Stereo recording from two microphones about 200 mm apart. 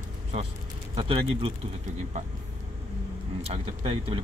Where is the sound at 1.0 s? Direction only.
25° right (ahead or behind).